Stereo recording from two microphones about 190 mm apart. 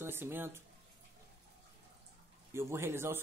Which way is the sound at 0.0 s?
10° right (ahead or behind).